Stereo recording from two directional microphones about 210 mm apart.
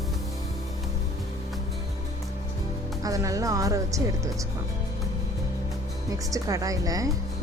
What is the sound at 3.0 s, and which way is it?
Speech, 15° right (ahead or behind).